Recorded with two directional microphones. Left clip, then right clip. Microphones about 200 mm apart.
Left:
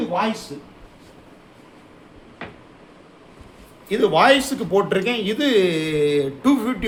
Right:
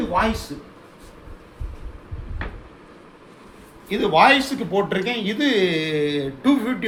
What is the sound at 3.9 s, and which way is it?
Speech, 45° left (ahead or behind).